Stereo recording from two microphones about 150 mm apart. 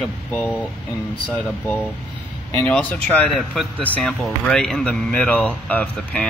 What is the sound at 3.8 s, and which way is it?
Speech, 10° left (ahead or behind).